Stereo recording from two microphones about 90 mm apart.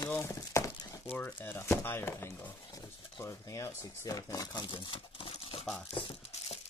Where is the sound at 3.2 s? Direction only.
40° left (ahead or behind).